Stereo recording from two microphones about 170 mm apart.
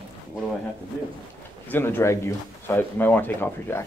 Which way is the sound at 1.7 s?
15° left (ahead or behind).